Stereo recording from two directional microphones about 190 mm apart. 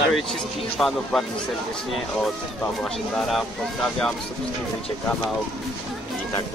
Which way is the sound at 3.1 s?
Centre (ahead or behind).